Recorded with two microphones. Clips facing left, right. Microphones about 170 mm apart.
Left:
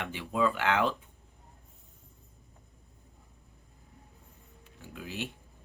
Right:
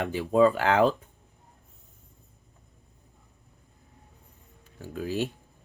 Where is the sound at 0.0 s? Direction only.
40° right (ahead or behind).